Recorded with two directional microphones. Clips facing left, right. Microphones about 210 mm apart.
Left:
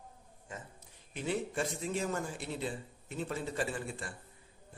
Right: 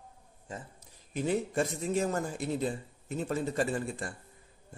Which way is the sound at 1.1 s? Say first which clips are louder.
Right 5 dB; 45° right (ahead or behind).